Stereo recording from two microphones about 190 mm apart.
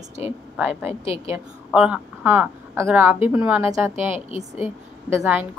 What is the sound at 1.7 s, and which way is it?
A woman's voice, 5° right (ahead or behind).